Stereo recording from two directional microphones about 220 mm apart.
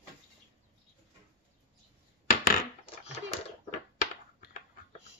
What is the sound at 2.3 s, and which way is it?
Coin, 40° left (ahead or behind).